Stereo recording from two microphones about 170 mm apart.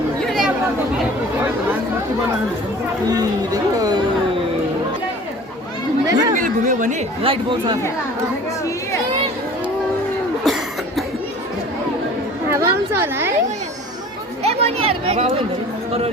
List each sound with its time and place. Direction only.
0.3 s chatter: centre (ahead or behind)
3.1 s speech: 20° right (ahead or behind)
6.1 s chatter: 20° right (ahead or behind)
6.3 s speech: 50° right (ahead or behind)
7.2 s speech: 30° right (ahead or behind)
10.4 s cough: centre (ahead or behind)
12.5 s a sound: 15° right (ahead or behind)
14.4 s a sound: 35° right (ahead or behind)